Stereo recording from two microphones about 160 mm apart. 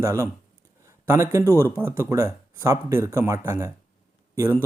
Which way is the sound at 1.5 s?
15° right (ahead or behind).